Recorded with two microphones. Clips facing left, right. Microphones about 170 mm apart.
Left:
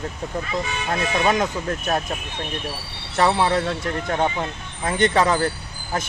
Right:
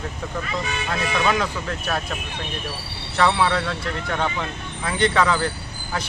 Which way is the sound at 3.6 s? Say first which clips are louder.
Left 3 dB; 25° left (ahead or behind).